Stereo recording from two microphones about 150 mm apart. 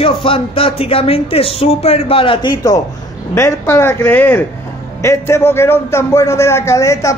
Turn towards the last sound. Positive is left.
turn(degrees=20)  # may be behind; listen again after turning